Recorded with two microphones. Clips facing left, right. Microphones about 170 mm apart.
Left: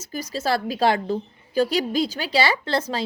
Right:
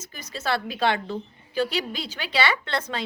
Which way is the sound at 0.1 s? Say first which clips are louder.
Left 4 dB; 35° left (ahead or behind).